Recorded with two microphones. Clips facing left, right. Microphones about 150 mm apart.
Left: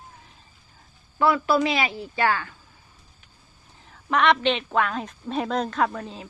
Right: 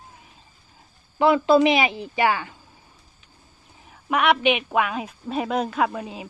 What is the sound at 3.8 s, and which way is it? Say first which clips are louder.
Speech: even; 10° right (ahead or behind).